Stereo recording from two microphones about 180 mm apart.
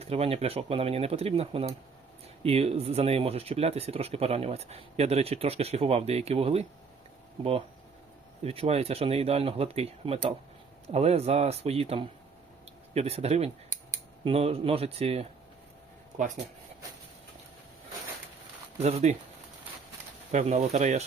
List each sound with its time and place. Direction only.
0.0 s speech: 35° right (ahead or behind)
8.4 s speech: 35° right (ahead or behind)
18.8 s speech: 35° right (ahead or behind)
20.3 s speech: 40° right (ahead or behind)